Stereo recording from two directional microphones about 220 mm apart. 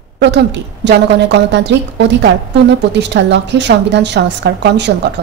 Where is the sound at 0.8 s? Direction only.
50° right (ahead or behind).